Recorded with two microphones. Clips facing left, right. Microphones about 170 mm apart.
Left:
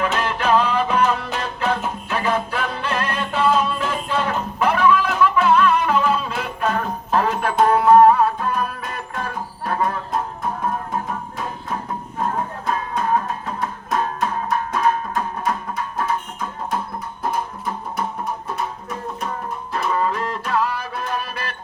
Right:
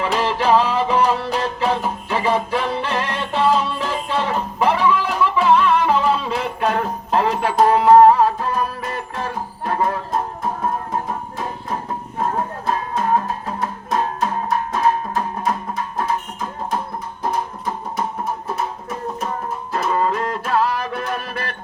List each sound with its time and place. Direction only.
0.2 s music: 30° right (ahead or behind)
12.4 s music: 35° right (ahead or behind)
19.8 s music: 35° right (ahead or behind)
21.0 s music: 60° right (ahead or behind)